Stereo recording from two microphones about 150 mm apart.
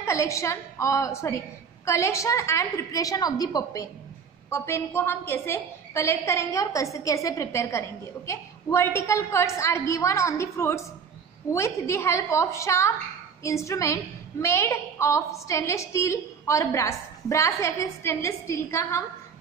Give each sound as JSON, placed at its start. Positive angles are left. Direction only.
{"t": 0.0, "sound": "a woman's voice", "side_deg": 20}